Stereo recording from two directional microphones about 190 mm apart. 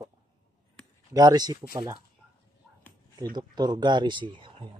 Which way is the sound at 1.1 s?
20° right (ahead or behind).